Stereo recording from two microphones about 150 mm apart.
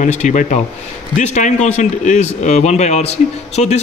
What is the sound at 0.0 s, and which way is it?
A man's voice, 50° left (ahead or behind).